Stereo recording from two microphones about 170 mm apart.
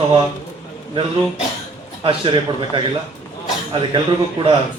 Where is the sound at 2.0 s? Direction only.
30° right (ahead or behind).